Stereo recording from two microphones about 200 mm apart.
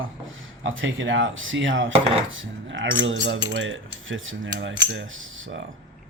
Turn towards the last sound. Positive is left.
turn(degrees=-65)  # may be behind; listen again after turning